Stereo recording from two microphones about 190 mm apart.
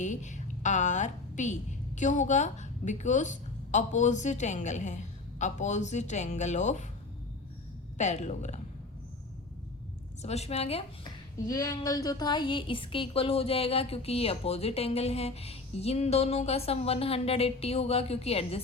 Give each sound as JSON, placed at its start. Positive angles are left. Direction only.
{"t": 0.0, "sound": "a woman's voice", "side_deg": 40}
{"t": 7.9, "sound": "a woman's voice", "side_deg": 35}
{"t": 10.2, "sound": "a woman's voice", "side_deg": 35}
{"t": 11.4, "sound": "a woman's voice", "side_deg": 20}